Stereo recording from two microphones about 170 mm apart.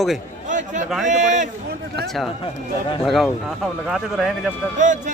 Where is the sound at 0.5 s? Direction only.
45° right (ahead or behind).